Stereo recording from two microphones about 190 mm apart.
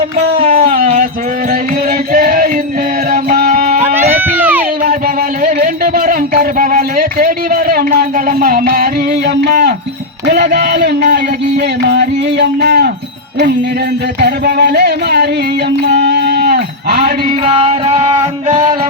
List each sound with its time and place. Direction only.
0.4 s a sound: 50° right (ahead or behind)
1.5 s music: 50° right (ahead or behind)
4.2 s a sound: 10° right (ahead or behind)
4.8 s music: 45° right (ahead or behind)
10.2 s a sound: 60° right (ahead or behind)
11.6 s music: 60° right (ahead or behind)
14.2 s music: 55° right (ahead or behind)
15.8 s mantra: 60° right (ahead or behind)
17.4 s music: 30° right (ahead or behind)